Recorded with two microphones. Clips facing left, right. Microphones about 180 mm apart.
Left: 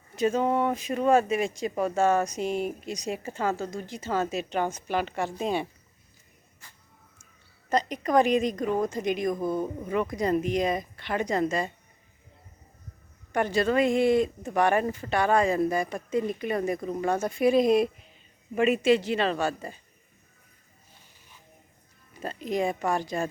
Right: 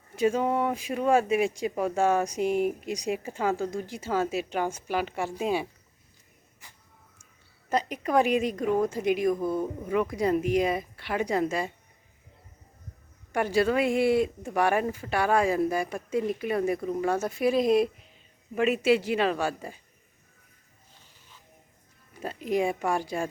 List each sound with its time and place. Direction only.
0.2 s speech: 10° right (ahead or behind)
6.6 s a sound: 15° right (ahead or behind)
7.7 s speech: 10° right (ahead or behind)
13.3 s speech: 10° right (ahead or behind)
22.2 s speech: 10° right (ahead or behind)